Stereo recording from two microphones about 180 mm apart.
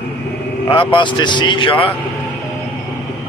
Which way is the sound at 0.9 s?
25° left (ahead or behind).